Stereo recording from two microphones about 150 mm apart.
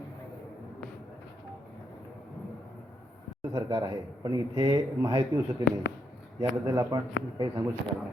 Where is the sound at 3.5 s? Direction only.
30° right (ahead or behind).